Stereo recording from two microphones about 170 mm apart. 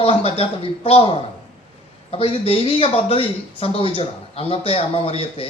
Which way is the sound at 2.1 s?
35° left (ahead or behind).